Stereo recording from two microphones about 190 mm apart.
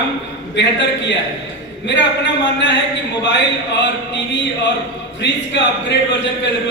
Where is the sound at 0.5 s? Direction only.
65° left (ahead or behind).